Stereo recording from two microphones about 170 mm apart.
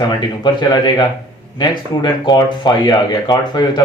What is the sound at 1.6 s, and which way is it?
Speech, 25° left (ahead or behind).